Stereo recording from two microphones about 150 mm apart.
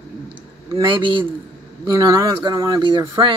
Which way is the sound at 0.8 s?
35° right (ahead or behind).